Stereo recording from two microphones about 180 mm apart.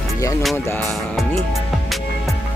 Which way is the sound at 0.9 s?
Centre (ahead or behind).